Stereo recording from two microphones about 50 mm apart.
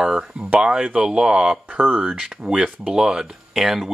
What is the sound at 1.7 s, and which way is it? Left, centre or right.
Speech, right.